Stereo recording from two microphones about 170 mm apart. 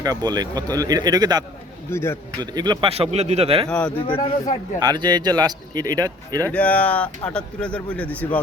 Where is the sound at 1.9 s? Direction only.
15° left (ahead or behind).